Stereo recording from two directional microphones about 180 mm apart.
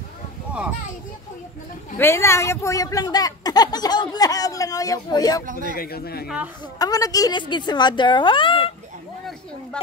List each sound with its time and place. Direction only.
2.0 s speech: 15° left (ahead or behind)
5.5 s speech: 50° right (ahead or behind)
5.8 s speech: 60° left (ahead or behind)
6.2 s speech: 5° right (ahead or behind)
6.8 s speech: 20° left (ahead or behind)